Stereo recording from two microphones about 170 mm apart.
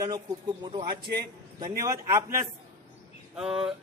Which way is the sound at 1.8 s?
20° right (ahead or behind).